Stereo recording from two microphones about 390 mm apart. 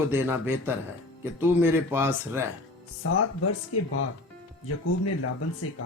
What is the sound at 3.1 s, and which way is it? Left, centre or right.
Speech, left.